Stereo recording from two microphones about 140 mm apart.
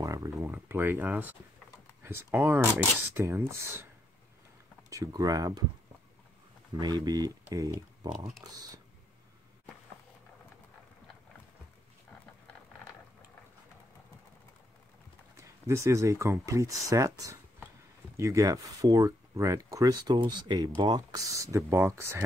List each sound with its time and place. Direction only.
0.0 s a sound: 25° right (ahead or behind)
0.5 s speech: 15° right (ahead or behind)
4.8 s speech: 25° right (ahead or behind)
6.8 s speech: 30° right (ahead or behind)
15.3 s speech: 20° right (ahead or behind)
18.1 s speech: 20° right (ahead or behind)